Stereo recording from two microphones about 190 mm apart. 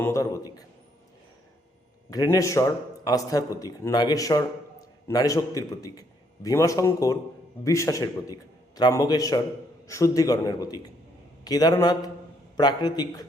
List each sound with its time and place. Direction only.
0.0 s a man's voice: 15° left (ahead or behind)
2.0 s a man's voice: 20° left (ahead or behind)